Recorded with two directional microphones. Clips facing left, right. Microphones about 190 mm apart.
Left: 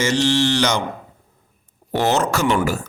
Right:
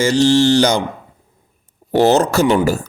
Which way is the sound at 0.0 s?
35° right (ahead or behind).